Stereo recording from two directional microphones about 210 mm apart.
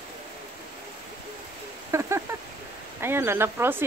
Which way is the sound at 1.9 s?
15° right (ahead or behind).